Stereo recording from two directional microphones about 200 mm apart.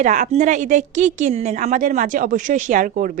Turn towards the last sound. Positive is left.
turn(degrees=-45)  # may be behind; listen again after turning